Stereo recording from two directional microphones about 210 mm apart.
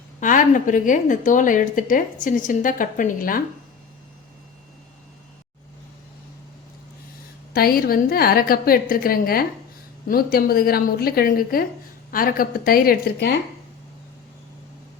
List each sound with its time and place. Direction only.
0.2 s a woman's voice: 40° left (ahead or behind)
7.5 s a woman's voice: 45° left (ahead or behind)